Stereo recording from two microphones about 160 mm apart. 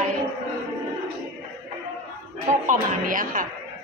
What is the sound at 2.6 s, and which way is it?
Speech, 55° right (ahead or behind).